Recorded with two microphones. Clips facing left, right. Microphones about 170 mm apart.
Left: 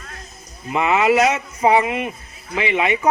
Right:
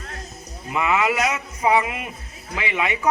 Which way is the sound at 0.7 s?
25° left (ahead or behind).